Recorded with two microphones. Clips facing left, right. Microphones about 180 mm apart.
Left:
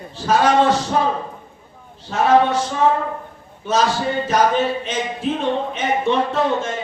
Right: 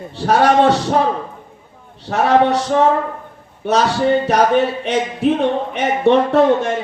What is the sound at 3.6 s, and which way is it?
A man's voice, 65° right (ahead or behind).